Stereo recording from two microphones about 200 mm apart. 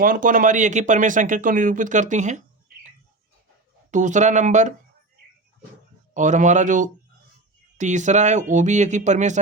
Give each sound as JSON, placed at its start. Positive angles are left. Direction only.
{"t": 0.0, "sound": "speech", "side_deg": -45}
{"t": 3.9, "sound": "speech", "side_deg": -35}
{"t": 6.1, "sound": "speech", "side_deg": -35}